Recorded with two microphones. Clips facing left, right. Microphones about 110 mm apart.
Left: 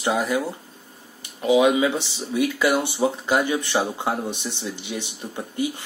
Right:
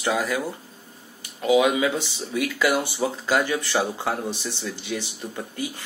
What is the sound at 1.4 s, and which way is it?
Speech, 25° left (ahead or behind).